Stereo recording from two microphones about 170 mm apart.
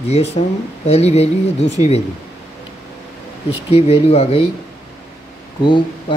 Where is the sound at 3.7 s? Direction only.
35° left (ahead or behind).